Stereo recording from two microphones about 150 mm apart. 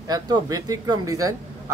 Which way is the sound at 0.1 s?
25° right (ahead or behind).